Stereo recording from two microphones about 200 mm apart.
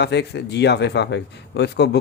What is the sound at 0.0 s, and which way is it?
Speech, 55° left (ahead or behind).